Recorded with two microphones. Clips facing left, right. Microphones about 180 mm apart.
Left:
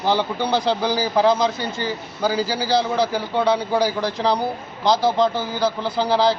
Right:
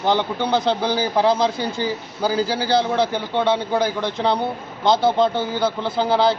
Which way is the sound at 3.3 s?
25° right (ahead or behind).